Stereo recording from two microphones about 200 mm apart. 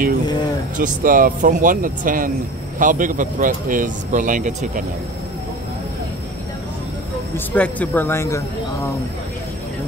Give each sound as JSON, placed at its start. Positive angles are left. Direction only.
{"t": 0.7, "sound": "speech", "side_deg": -40}
{"t": 7.3, "sound": "speech", "side_deg": 5}